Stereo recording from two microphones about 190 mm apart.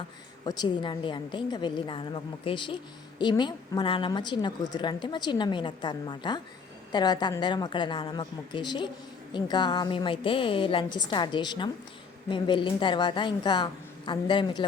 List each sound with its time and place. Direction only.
0.4 s a woman's voice: 25° left (ahead or behind)